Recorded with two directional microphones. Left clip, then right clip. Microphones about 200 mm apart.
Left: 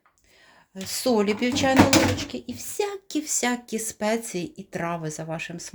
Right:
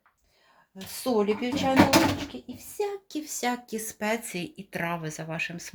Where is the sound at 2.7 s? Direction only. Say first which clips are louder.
Left 3 dB; 45° left (ahead or behind); by 5.7 s 25° left (ahead or behind).